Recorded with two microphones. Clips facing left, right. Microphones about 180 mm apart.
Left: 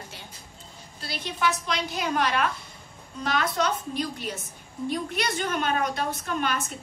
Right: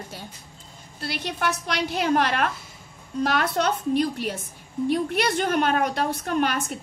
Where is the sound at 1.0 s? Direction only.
60° right (ahead or behind).